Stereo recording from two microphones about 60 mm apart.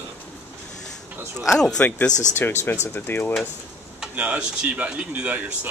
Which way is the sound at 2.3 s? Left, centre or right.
Left.